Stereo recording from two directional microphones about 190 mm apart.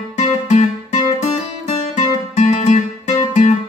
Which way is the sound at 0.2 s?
40° left (ahead or behind).